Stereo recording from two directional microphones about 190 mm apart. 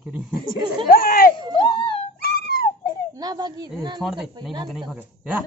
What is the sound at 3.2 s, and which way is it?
Speech, 20° right (ahead or behind).